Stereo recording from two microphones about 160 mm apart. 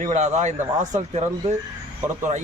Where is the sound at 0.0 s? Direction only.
45° right (ahead or behind).